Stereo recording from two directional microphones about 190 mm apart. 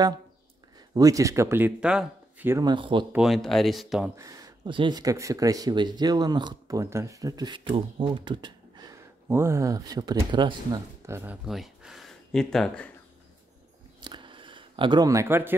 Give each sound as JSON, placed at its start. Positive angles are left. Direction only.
{"t": 0.7, "sound": "speech", "side_deg": -20}
{"t": 3.1, "sound": "speech", "side_deg": 0}
{"t": 4.2, "sound": "speech", "side_deg": -20}
{"t": 11.4, "sound": "speech", "side_deg": 0}
{"t": 14.0, "sound": "a sound", "side_deg": -25}